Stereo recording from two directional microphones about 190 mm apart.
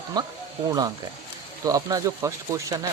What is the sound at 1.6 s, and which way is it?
Speech, 20° right (ahead or behind).